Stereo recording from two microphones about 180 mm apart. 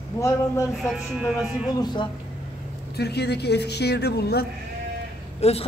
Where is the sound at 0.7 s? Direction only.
Centre (ahead or behind).